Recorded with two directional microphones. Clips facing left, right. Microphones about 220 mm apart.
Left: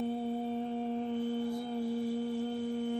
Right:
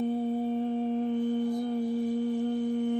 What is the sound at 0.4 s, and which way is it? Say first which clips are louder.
Music: right 6 dB; 15° right (ahead or behind).